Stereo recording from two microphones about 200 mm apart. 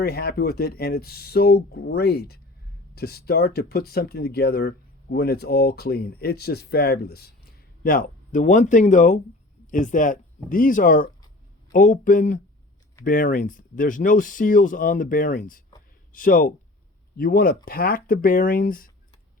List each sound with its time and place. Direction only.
0.0 s speech: 50° left (ahead or behind)